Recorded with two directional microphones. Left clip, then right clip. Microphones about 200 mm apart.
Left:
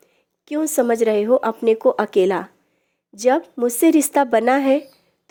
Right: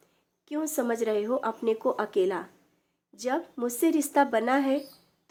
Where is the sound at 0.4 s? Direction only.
35° left (ahead or behind).